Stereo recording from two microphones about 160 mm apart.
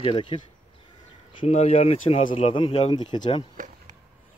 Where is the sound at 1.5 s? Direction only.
45° left (ahead or behind).